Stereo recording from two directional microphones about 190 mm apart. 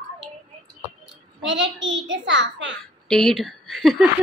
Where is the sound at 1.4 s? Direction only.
75° right (ahead or behind).